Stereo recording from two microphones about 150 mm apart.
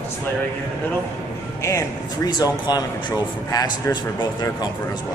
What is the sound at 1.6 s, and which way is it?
A man's voice, 20° left (ahead or behind).